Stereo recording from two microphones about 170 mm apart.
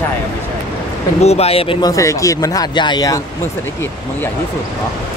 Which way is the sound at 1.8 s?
20° left (ahead or behind).